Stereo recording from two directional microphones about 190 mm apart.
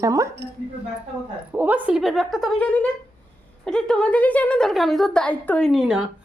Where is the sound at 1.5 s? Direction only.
10° right (ahead or behind).